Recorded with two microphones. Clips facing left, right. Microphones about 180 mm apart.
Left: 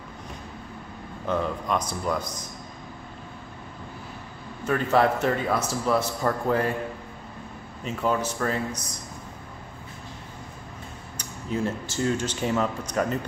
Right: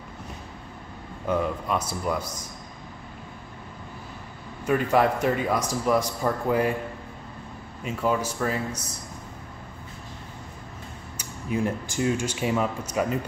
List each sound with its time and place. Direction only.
1.2 s a man's voice: 10° right (ahead or behind)
4.6 s a man's voice: 10° right (ahead or behind)
7.8 s a man's voice: 10° right (ahead or behind)
11.1 s a man's voice: 10° right (ahead or behind)